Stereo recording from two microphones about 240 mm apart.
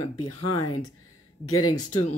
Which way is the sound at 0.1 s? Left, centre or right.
Left.